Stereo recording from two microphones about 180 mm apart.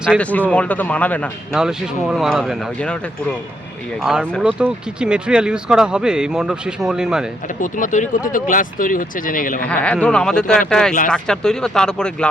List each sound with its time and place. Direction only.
0.0 s speech: 5° left (ahead or behind)
1.5 s speech: 5° right (ahead or behind)
4.0 s speech: centre (ahead or behind)
7.4 s speech: 45° left (ahead or behind)
9.6 s speech: 5° left (ahead or behind)